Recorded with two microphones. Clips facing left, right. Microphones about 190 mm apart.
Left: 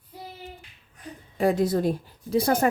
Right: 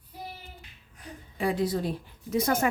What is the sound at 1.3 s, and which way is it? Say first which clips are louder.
Speech: left 5 dB; 45° left (ahead or behind).